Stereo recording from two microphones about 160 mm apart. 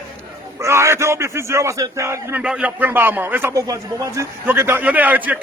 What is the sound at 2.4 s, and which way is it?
A man's voice, 5° right (ahead or behind).